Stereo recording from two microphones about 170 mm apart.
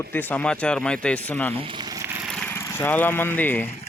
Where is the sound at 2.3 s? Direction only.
5° left (ahead or behind).